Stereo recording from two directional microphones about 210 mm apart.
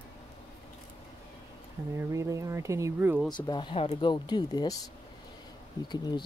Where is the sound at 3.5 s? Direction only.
25° left (ahead or behind).